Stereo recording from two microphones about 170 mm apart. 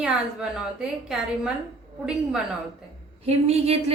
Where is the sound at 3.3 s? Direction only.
35° right (ahead or behind).